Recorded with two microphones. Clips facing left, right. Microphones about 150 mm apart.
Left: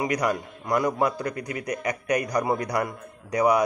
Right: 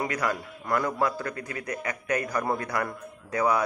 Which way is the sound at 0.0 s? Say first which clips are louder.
Left 4 dB; 15° left (ahead or behind).